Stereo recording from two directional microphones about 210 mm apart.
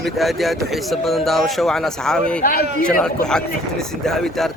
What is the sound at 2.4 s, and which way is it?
Speech, 45° left (ahead or behind).